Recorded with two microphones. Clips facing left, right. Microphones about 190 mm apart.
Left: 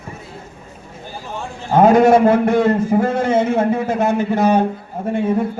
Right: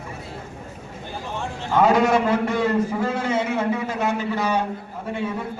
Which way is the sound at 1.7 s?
50° left (ahead or behind).